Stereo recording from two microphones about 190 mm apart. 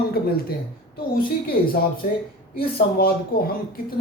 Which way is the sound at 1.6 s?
50° left (ahead or behind).